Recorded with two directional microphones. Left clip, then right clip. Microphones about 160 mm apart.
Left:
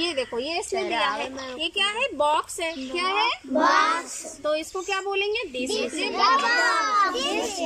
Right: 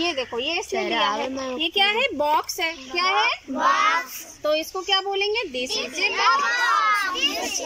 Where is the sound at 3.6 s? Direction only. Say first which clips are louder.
Even; 75° left (ahead or behind).